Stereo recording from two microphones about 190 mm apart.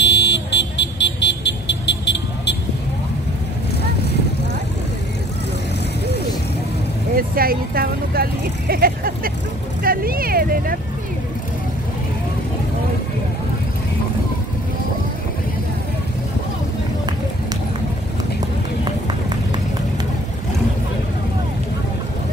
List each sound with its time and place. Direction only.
0.0 s vehicle: 65° left (ahead or behind)
7.2 s vehicle: 50° right (ahead or behind)